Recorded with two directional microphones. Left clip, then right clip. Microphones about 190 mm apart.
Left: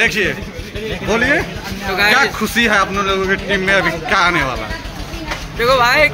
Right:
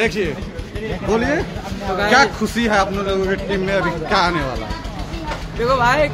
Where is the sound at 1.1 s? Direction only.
5° right (ahead or behind).